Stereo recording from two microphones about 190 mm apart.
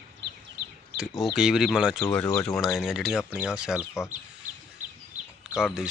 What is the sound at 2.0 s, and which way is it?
Speech, 15° left (ahead or behind).